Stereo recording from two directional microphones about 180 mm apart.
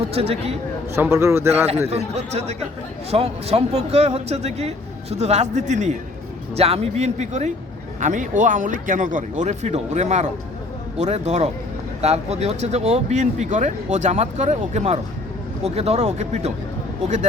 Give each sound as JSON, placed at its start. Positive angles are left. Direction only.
{"t": 0.1, "sound": "speech", "side_deg": -35}
{"t": 0.9, "sound": "a man's voice", "side_deg": -15}
{"t": 1.9, "sound": "speech", "side_deg": -35}